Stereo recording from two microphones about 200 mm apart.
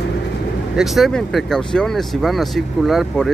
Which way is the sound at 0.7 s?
Centre (ahead or behind).